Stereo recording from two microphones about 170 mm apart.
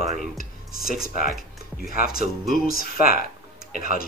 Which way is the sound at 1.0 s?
60° left (ahead or behind).